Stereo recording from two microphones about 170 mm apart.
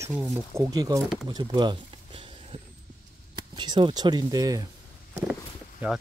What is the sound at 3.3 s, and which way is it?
Speech, 25° right (ahead or behind).